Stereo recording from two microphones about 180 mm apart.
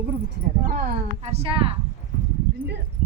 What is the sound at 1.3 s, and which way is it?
Speech, 30° right (ahead or behind).